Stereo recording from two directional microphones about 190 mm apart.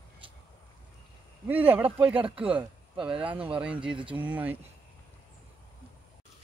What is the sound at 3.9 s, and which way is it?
Speech, 25° right (ahead or behind).